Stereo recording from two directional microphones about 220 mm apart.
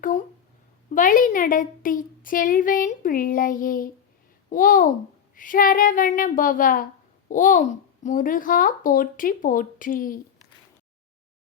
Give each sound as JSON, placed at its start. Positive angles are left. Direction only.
{"t": 0.9, "sound": "a woman's voice", "side_deg": 35}